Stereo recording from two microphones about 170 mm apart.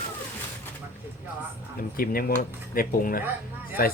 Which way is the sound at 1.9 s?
60° left (ahead or behind).